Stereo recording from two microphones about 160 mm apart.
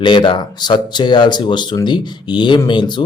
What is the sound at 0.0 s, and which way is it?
Speech, 30° left (ahead or behind).